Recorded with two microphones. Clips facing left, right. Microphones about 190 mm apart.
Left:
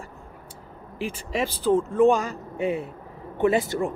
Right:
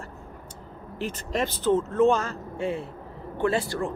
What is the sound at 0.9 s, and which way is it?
Speech, 10° left (ahead or behind).